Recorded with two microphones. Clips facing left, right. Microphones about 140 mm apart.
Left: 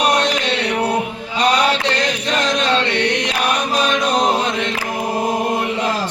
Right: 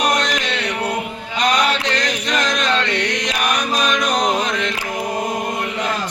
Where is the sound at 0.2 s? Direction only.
30° left (ahead or behind).